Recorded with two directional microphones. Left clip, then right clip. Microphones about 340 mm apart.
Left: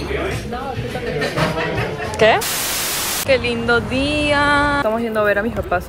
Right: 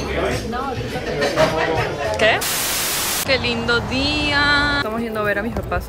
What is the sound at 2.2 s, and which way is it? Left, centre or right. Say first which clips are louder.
Speech: left 4 dB; centre.